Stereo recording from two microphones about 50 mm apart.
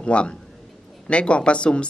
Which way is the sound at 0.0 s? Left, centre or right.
Left.